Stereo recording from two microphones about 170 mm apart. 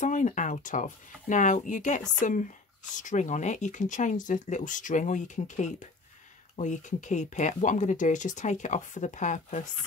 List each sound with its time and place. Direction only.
0.0 s speech: 45° left (ahead or behind)